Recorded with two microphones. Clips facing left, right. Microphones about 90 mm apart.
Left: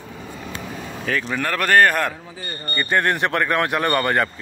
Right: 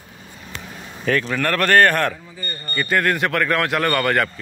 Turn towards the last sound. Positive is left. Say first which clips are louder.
# even
turn(degrees=25)  # may be behind; listen again after turning